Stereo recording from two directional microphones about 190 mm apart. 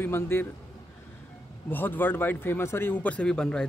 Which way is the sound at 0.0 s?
10° left (ahead or behind).